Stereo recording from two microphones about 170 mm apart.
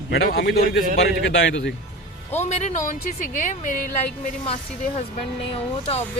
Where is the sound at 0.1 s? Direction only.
75° left (ahead or behind); by 1.7 s 90° left.